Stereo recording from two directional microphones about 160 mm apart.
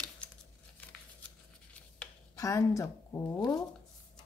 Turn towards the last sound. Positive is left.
turn(degrees=20)  # may be behind; listen again after turning